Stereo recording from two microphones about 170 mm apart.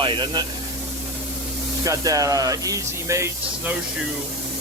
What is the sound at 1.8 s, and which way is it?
Speech, 20° right (ahead or behind).